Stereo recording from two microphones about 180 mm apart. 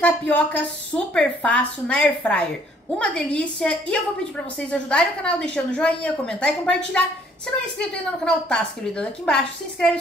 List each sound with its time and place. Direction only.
0.0 s a woman's voice: 10° left (ahead or behind)
7.9 s a woman's voice: 5° left (ahead or behind)